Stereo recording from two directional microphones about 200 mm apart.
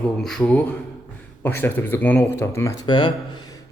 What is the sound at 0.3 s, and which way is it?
A man's voice, 5° left (ahead or behind).